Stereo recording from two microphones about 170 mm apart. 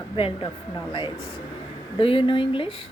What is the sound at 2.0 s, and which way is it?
Speech, 30° left (ahead or behind).